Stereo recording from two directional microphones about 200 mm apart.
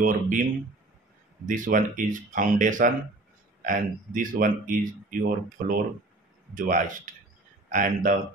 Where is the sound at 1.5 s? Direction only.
40° right (ahead or behind).